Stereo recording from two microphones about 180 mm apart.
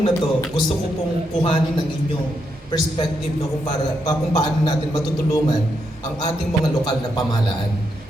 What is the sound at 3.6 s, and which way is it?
A man's voice, 20° left (ahead or behind).